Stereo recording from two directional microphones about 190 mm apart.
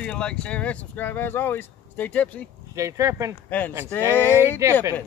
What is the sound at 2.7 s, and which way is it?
Speech, 15° right (ahead or behind).